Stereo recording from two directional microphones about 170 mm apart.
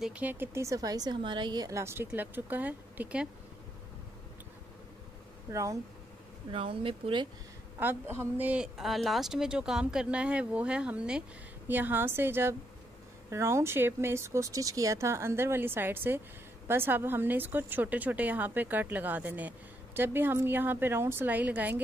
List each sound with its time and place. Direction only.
0.0 s speech: 10° right (ahead or behind)
5.5 s speech: 20° right (ahead or behind)
6.5 s speech: 30° right (ahead or behind)
7.8 s speech: 15° right (ahead or behind)